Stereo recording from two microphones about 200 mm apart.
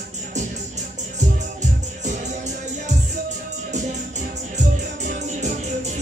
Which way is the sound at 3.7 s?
35° right (ahead or behind).